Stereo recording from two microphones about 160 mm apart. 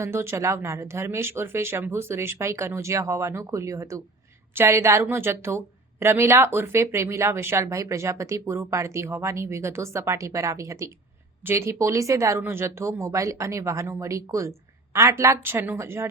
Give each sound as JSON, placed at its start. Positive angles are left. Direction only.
{"t": 0.0, "sound": "a woman's voice", "side_deg": -15}